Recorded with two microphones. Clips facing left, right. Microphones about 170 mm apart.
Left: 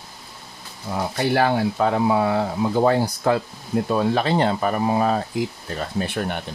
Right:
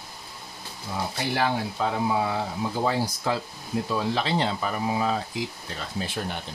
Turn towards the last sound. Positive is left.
turn(degrees=60)  # may be behind; listen again after turning